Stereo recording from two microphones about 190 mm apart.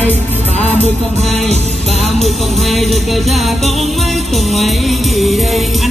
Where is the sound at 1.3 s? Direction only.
35° right (ahead or behind).